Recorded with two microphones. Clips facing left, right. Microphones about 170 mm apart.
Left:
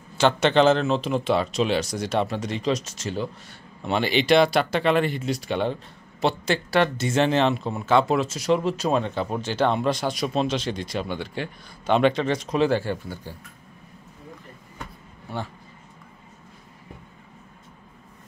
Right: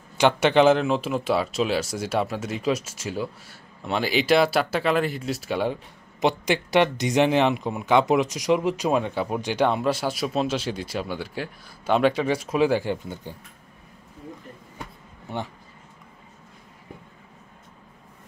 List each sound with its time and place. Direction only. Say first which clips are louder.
0.2 s speech: right 1 dB; 10° right (ahead or behind)
15.2 s speech: right 1 dB; 20° right (ahead or behind)